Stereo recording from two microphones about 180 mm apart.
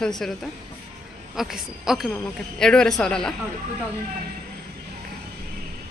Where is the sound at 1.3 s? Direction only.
Centre (ahead or behind).